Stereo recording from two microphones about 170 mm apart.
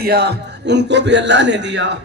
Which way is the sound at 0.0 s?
70° right (ahead or behind).